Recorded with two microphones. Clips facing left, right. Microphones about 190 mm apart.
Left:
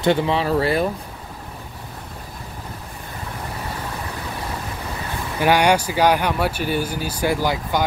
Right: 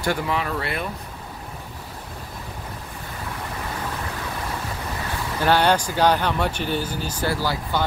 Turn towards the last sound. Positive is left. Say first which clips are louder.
# left 3 dB
turn(degrees=15)  # may be behind; listen again after turning